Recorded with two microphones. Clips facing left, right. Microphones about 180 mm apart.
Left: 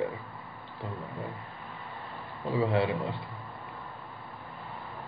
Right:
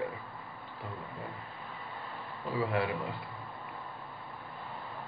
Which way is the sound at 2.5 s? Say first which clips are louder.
Left 5 dB; 25° left (ahead or behind).